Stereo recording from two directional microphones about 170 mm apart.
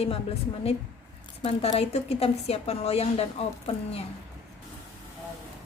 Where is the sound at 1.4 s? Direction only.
35° left (ahead or behind).